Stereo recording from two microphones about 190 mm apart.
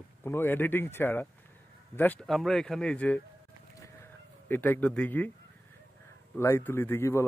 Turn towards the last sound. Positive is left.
turn(degrees=15)  # may be behind; listen again after turning